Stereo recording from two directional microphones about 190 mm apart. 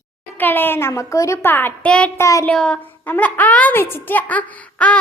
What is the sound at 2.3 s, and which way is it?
Speech, 15° left (ahead or behind).